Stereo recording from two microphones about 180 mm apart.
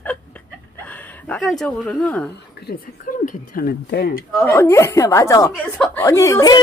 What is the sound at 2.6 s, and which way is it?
Speech, 50° left (ahead or behind).